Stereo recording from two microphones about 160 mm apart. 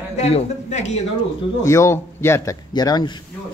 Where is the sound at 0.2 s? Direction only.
40° left (ahead or behind).